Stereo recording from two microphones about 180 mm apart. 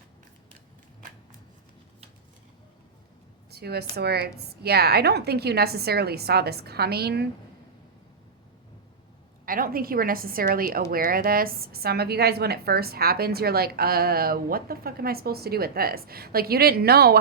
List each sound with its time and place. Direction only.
3.5 s a woman's voice: 60° right (ahead or behind)
9.5 s a woman's voice: 55° right (ahead or behind)